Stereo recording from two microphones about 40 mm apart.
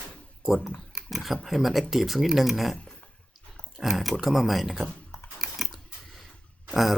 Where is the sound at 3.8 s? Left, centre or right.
Centre.